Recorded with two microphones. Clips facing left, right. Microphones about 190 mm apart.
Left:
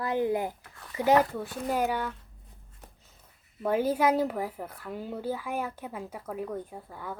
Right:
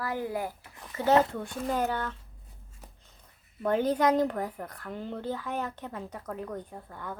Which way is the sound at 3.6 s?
5° left (ahead or behind).